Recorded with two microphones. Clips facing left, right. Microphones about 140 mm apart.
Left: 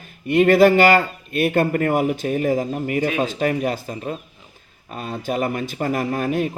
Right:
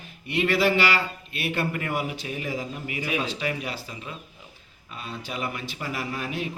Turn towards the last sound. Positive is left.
turn(degrees=50)  # may be behind; listen again after turning